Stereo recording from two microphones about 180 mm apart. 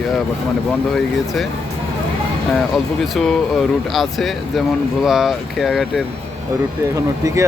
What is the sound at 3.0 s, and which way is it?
Speech, centre (ahead or behind).